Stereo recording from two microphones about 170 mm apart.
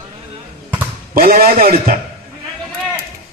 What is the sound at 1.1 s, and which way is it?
Speech, 60° right (ahead or behind).